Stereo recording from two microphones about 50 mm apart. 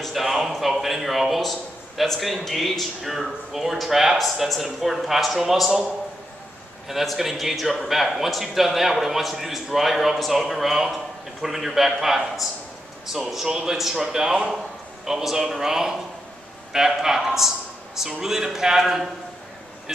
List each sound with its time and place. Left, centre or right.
0.0 s speech: centre
6.9 s speech: centre
13.5 s a man's voice: centre
13.7 s speech: centre